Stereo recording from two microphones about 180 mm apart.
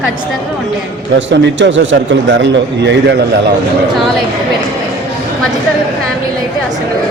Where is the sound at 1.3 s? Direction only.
85° right.